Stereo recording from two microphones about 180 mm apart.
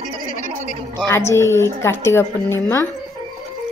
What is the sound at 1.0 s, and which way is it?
A woman's voice, 15° left (ahead or behind).